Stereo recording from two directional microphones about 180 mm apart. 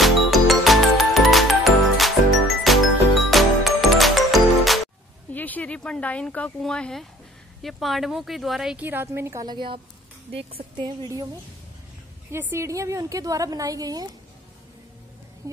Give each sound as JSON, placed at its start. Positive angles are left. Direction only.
{"t": 0.0, "sound": "music", "side_deg": 0}
{"t": 5.3, "sound": "a woman's voice", "side_deg": 10}
{"t": 10.8, "sound": "a woman's voice", "side_deg": -20}
{"t": 12.3, "sound": "a woman's voice", "side_deg": -15}
{"t": 15.4, "sound": "speech", "side_deg": -20}